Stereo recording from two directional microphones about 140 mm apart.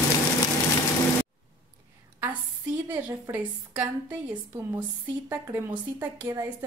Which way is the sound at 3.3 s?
10° right (ahead or behind).